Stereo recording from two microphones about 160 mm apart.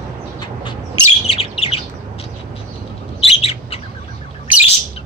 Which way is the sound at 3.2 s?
40° left (ahead or behind).